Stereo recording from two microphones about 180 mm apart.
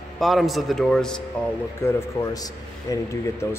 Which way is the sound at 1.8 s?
20° left (ahead or behind).